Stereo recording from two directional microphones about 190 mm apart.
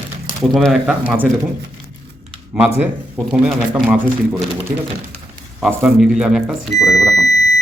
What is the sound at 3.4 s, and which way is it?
Speech, 10° right (ahead or behind).